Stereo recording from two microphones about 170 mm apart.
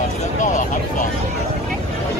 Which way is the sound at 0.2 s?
45° left (ahead or behind).